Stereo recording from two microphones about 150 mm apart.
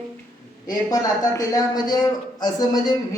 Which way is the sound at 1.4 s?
20° left (ahead or behind).